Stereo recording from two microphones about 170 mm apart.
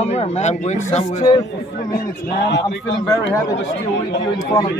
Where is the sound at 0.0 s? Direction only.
40° left (ahead or behind).